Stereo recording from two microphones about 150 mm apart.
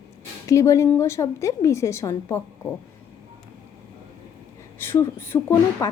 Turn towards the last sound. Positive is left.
turn(degrees=15)  # may be behind; listen again after turning